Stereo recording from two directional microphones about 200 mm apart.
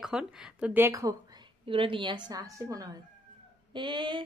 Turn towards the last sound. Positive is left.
turn(degrees=-25)  # may be behind; listen again after turning